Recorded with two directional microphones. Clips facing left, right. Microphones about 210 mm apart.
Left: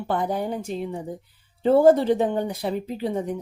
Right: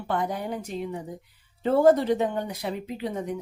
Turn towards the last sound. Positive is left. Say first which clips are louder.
# left 4 dB
turn(degrees=30)  # may be behind; listen again after turning